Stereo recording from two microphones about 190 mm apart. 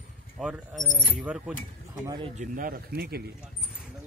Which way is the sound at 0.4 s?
5° right (ahead or behind).